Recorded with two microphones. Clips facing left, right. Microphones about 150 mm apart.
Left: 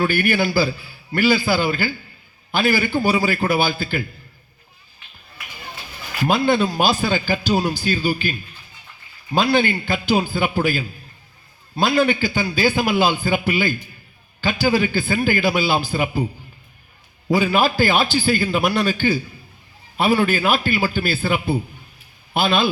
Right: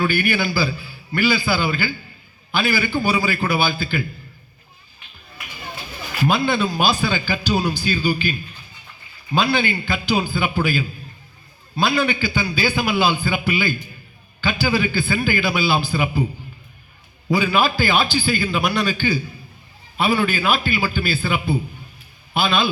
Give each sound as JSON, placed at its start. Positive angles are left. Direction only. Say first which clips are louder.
{"t": 0.0, "sound": "a man's voice", "louder": "left 1 dB", "side_deg": 50}
{"t": 6.2, "sound": "a man's voice", "louder": "left 2 dB", "side_deg": 50}
{"t": 17.3, "sound": "a man's voice", "louder": "left 1 dB", "side_deg": 45}